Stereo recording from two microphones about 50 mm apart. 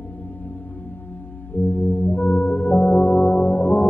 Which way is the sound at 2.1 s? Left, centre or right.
Left.